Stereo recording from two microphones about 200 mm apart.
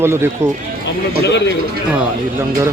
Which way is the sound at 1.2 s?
60° left (ahead or behind).